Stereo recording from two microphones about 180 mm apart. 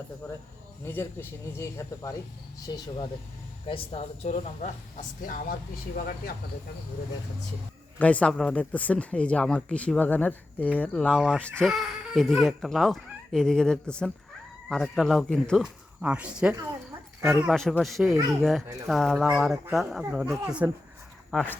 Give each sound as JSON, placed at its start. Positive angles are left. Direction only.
{"t": 0.9, "sound": "speech", "side_deg": 10}
{"t": 7.9, "sound": "speech", "side_deg": 10}
{"t": 17.5, "sound": "speech", "side_deg": 0}
{"t": 21.2, "sound": "speech", "side_deg": 5}